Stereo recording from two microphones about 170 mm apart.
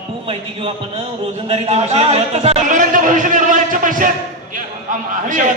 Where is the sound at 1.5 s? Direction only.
35° right (ahead or behind).